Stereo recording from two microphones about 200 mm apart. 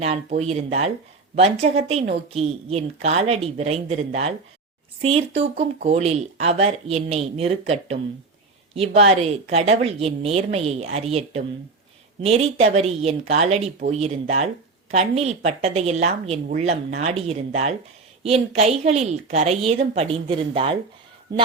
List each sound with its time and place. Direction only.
0.0 s speech: 30° right (ahead or behind)